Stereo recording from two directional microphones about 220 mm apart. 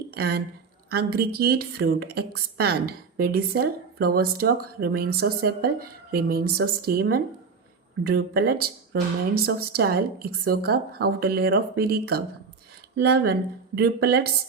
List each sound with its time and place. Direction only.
0.1 s a woman's voice: 45° right (ahead or behind)